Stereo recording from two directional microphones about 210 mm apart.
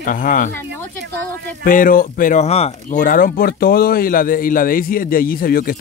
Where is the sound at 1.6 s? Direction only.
40° left (ahead or behind).